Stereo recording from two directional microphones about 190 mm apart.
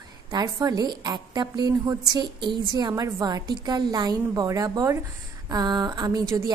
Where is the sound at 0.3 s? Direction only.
20° right (ahead or behind).